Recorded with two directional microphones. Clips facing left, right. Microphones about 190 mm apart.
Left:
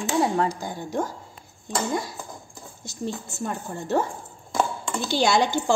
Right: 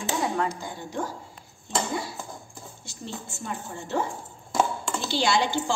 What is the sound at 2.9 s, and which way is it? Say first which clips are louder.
A woman's voice: left 7 dB; 40° left (ahead or behind).